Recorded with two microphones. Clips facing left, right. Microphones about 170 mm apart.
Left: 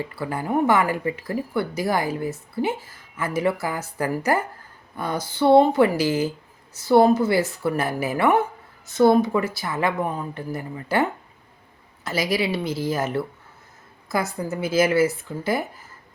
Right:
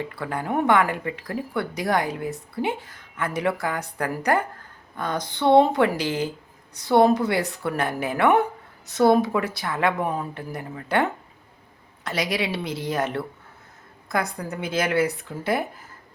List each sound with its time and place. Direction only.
0.0 s speech: 5° left (ahead or behind)
12.0 s speech: centre (ahead or behind)